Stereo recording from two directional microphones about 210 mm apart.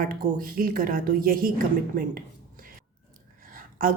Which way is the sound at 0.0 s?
40° right (ahead or behind).